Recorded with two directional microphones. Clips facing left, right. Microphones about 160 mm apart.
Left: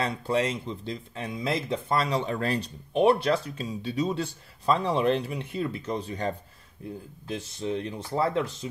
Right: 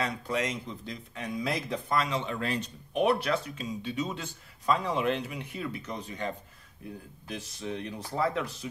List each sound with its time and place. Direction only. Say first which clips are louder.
0.0 s speech: left 4 dB; 30° left (ahead or behind)